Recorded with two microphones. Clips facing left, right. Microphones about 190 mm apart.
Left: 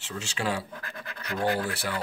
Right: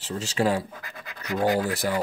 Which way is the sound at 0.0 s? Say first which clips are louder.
Right 7 dB; 35° right (ahead or behind).